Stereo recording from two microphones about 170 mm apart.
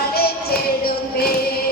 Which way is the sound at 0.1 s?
65° left (ahead or behind).